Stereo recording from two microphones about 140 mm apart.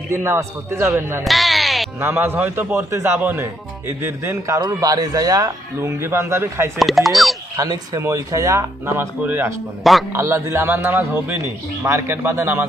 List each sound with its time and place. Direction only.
0.1 s a man's voice: 20° right (ahead or behind)
1.2 s a sound: centre (ahead or behind)
2.0 s a man's voice: 15° right (ahead or behind)
6.7 s speech: centre (ahead or behind)
7.5 s a man's voice: 25° right (ahead or behind)
9.8 s speech: centre (ahead or behind)
10.1 s a man's voice: 20° right (ahead or behind)